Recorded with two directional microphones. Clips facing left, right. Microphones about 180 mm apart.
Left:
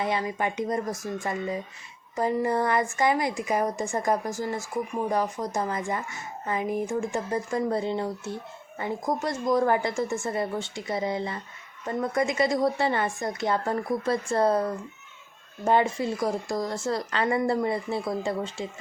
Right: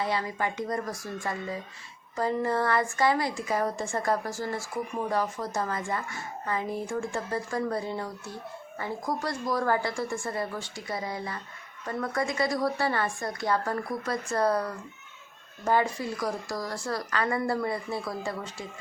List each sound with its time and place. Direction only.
0.0 s a woman's voice: 20° left (ahead or behind)